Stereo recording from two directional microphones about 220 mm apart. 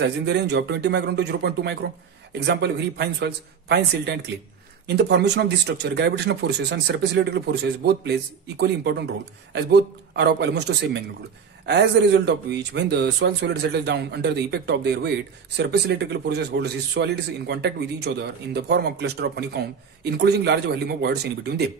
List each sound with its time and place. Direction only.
0.0 s speech: 50° right (ahead or behind)